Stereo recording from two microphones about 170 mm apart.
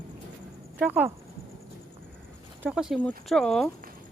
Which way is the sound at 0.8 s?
10° right (ahead or behind).